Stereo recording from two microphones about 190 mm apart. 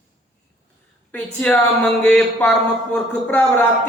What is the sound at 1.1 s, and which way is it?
Speech, 10° left (ahead or behind).